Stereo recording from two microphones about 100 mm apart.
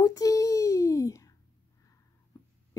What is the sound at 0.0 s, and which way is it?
Child singing, 35° left (ahead or behind).